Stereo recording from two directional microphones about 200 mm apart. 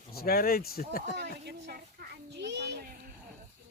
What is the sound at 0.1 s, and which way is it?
Speech, 50° left (ahead or behind).